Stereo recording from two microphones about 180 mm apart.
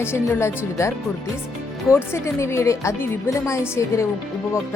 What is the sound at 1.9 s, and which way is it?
Speech, 15° left (ahead or behind).